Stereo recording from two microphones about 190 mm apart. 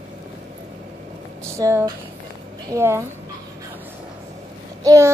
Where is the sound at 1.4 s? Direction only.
15° right (ahead or behind).